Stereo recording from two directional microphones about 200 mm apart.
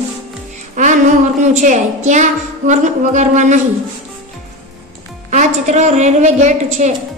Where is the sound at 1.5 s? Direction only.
35° right (ahead or behind).